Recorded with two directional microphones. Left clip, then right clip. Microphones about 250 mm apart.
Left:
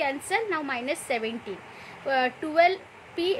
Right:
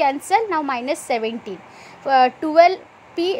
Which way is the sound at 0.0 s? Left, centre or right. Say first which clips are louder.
Right 9 dB; centre.